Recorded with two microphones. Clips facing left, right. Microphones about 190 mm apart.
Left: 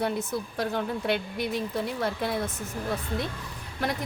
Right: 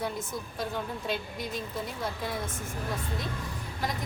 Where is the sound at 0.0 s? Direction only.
70° left (ahead or behind).